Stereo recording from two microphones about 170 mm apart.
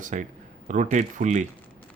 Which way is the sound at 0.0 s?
45° right (ahead or behind).